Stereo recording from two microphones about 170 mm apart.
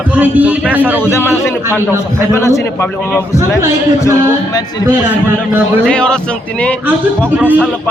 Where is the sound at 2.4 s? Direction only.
15° left (ahead or behind).